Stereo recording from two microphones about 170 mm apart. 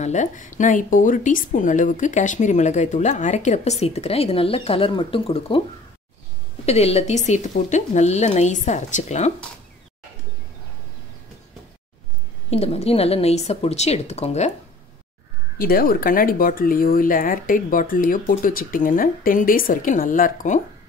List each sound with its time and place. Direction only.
0.0 s a woman's voice: 45° left (ahead or behind)
6.6 s a woman's voice: 40° left (ahead or behind)
12.4 s a woman's voice: 35° left (ahead or behind)
15.5 s speech: 60° left (ahead or behind)